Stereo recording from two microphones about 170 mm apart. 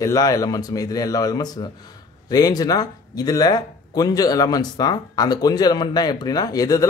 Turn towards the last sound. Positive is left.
turn(degrees=20)  # may be behind; listen again after turning